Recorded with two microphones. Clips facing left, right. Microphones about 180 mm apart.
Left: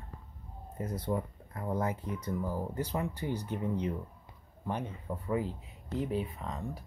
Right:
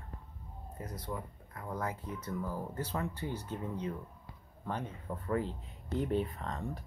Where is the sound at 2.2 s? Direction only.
15° left (ahead or behind).